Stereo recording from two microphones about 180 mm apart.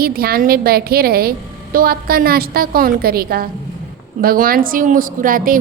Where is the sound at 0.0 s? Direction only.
55° right (ahead or behind).